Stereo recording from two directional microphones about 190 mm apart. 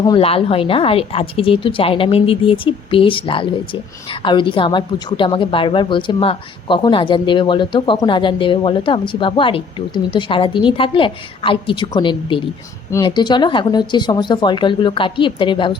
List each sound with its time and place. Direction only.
0.0 s speech: 25° left (ahead or behind)